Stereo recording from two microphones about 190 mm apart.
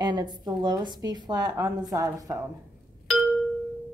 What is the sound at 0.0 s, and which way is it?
A woman's voice, 25° right (ahead or behind).